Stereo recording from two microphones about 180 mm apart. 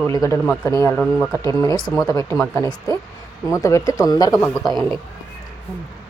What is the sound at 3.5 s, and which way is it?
Speech, 15° left (ahead or behind).